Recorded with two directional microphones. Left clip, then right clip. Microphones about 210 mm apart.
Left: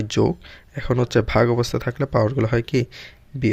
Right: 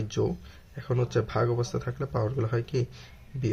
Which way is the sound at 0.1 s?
35° left (ahead or behind).